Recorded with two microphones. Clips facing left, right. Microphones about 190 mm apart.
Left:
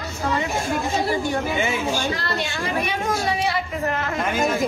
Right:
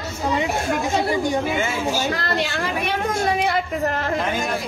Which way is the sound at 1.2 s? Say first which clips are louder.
Right 2 dB; 15° right (ahead or behind).